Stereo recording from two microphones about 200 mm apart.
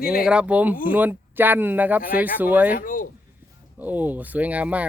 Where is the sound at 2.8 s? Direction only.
45° left (ahead or behind).